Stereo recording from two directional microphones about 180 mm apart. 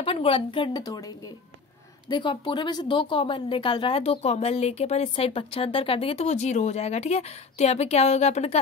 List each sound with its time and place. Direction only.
0.0 s a woman's voice: 30° left (ahead or behind)